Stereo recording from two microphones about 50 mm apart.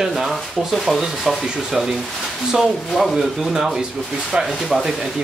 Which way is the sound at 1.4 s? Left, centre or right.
Centre.